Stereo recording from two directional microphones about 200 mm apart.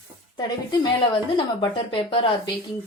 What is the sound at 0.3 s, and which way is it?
Speech, 20° left (ahead or behind).